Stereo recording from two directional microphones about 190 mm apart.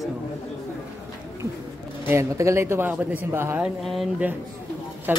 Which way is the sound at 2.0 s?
15° right (ahead or behind).